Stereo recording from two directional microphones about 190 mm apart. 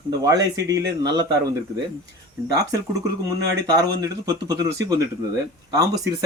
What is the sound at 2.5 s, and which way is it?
Speech, 20° right (ahead or behind).